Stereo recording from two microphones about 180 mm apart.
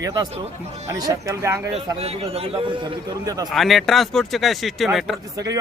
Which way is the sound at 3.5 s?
Centre (ahead or behind).